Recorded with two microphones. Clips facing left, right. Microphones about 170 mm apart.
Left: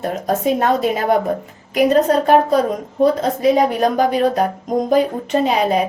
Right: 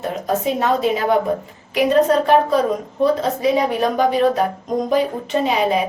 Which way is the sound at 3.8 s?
40° left (ahead or behind).